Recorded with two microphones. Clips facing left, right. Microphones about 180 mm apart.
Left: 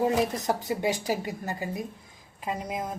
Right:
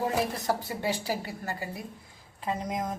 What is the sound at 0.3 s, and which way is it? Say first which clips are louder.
A woman's voice: left 2 dB; 20° left (ahead or behind).